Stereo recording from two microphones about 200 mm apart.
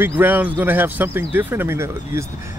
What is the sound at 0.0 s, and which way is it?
Speech, 10° right (ahead or behind).